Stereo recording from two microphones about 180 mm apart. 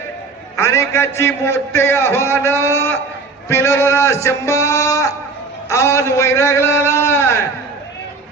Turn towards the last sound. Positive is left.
turn(degrees=15)  # may be behind; listen again after turning